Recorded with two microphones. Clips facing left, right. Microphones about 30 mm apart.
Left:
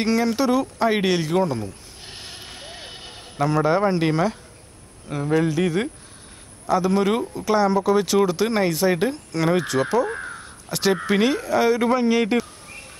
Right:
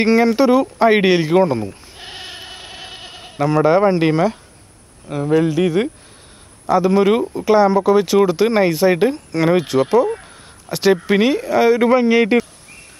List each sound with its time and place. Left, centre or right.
0.0 s speech: right
2.0 s sheep: right
2.6 s vehicle: right
3.3 s speech: centre
6.6 s speech: centre
10.3 s caw: centre
11.1 s speech: centre